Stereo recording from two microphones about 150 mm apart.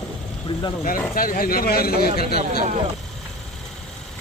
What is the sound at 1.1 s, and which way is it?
Speech, 70° left (ahead or behind).